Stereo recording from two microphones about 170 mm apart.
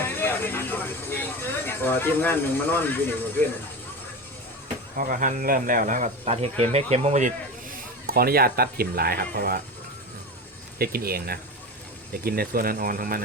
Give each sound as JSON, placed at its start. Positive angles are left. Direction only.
{"t": 0.0, "sound": "vehicle", "side_deg": 10}
{"t": 4.9, "sound": "speech", "side_deg": -55}
{"t": 10.8, "sound": "speech", "side_deg": -65}